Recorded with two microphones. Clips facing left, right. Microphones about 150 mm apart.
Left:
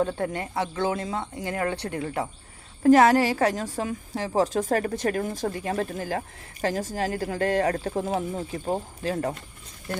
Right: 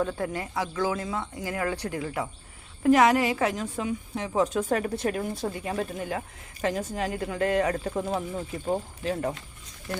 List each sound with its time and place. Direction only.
0.0 s speech: 30° left (ahead or behind)